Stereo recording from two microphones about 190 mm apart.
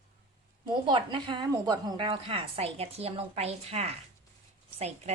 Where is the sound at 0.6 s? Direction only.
25° right (ahead or behind).